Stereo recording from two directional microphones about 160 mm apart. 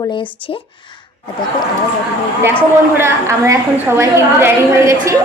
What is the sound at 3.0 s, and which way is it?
A woman's voice, 15° right (ahead or behind).